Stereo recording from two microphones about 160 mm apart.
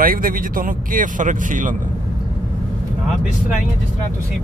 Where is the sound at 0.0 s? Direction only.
60° right (ahead or behind).